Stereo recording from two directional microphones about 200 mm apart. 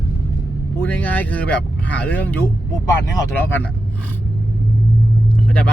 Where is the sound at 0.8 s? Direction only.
10° left (ahead or behind).